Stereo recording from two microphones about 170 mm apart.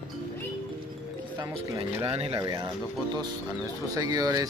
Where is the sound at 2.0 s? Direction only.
35° right (ahead or behind).